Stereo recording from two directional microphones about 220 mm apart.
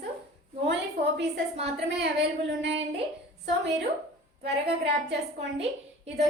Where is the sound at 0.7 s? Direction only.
50° right (ahead or behind).